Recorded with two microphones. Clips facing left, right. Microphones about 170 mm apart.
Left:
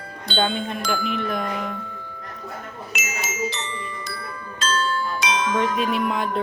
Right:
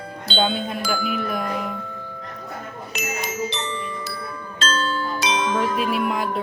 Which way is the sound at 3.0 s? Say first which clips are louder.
Right 2 dB; 5° left (ahead or behind).